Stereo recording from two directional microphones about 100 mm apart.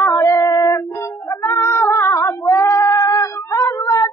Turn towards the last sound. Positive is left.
turn(degrees=30)  # may be behind; listen again after turning